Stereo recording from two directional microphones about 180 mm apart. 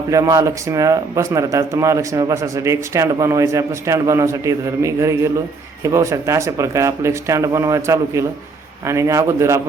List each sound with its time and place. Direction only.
0.1 s speech: 20° right (ahead or behind)